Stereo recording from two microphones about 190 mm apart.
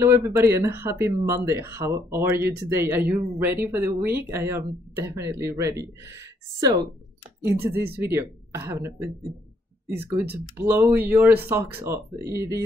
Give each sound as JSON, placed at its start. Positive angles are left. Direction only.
{"t": 0.0, "sound": "speech", "side_deg": -15}
{"t": 8.0, "sound": "speech", "side_deg": -15}